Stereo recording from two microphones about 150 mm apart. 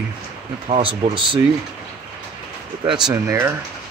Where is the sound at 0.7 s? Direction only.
35° right (ahead or behind).